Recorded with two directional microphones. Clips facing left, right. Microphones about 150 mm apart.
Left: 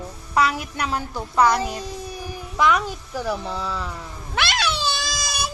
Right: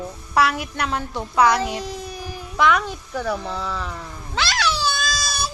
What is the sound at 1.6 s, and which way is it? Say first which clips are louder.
Child singing: right 2 dB; 10° right (ahead or behind).